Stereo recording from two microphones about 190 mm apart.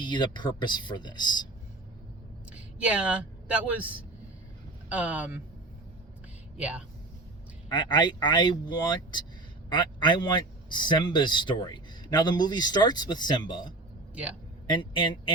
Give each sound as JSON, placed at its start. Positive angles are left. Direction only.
{"t": 0.0, "sound": "a man's voice", "side_deg": 25}
{"t": 2.7, "sound": "speech", "side_deg": -5}
{"t": 6.6, "sound": "speech", "side_deg": -5}
{"t": 7.7, "sound": "a man's voice", "side_deg": 25}